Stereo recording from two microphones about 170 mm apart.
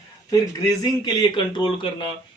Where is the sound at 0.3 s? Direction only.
25° left (ahead or behind).